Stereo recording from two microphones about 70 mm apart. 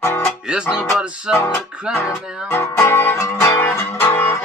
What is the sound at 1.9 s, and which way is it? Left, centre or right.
Music, left.